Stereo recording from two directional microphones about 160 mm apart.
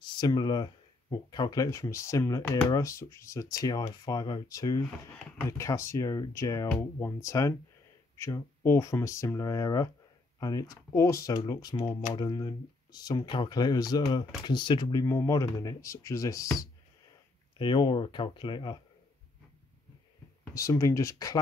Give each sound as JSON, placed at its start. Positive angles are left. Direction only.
{"t": 0.0, "sound": "speech", "side_deg": 30}
{"t": 17.6, "sound": "speech", "side_deg": 30}
{"t": 20.5, "sound": "speech", "side_deg": 20}